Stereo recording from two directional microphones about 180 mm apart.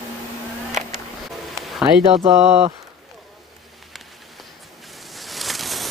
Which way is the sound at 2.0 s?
30° right (ahead or behind).